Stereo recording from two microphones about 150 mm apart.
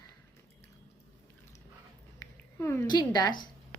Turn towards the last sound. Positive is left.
turn(degrees=25)  # may be behind; listen again after turning